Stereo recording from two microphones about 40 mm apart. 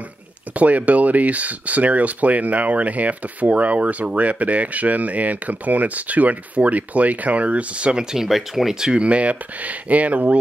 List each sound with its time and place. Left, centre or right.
0.6 s speech: right
7.9 s speech: centre
8.8 s speech: right